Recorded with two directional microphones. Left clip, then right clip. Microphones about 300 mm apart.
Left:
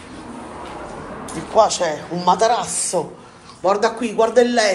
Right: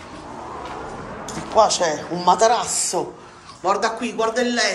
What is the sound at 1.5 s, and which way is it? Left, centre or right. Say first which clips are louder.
A man's voice: left 1 dB; centre.